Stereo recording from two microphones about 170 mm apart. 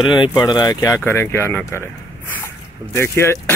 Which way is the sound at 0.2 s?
20° left (ahead or behind).